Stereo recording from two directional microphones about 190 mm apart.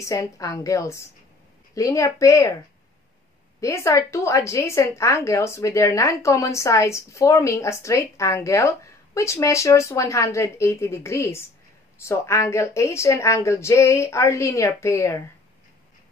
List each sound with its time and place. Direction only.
0.0 s speech: 15° left (ahead or behind)
3.6 s speech: 15° left (ahead or behind)